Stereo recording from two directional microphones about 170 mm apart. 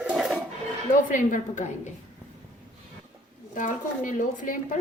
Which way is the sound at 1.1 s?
50° left (ahead or behind).